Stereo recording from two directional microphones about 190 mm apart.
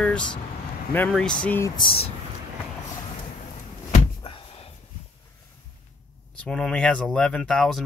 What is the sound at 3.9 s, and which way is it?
Door, 30° left (ahead or behind).